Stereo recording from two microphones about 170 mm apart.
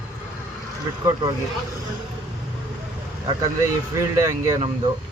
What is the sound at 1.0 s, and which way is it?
Speech, 20° right (ahead or behind).